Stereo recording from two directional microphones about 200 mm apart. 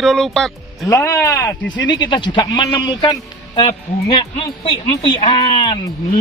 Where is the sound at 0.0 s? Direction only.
Centre (ahead or behind).